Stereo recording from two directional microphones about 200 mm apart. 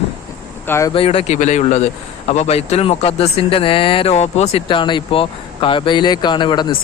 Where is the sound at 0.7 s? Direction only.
15° left (ahead or behind).